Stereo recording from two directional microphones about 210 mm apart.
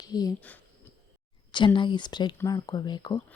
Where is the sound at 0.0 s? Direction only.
15° left (ahead or behind).